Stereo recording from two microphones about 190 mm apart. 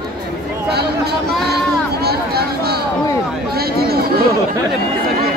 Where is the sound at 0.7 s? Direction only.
60° right (ahead or behind).